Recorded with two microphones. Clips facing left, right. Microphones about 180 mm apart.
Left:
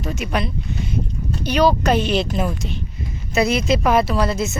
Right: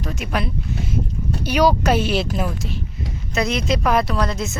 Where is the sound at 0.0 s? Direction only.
Centre (ahead or behind).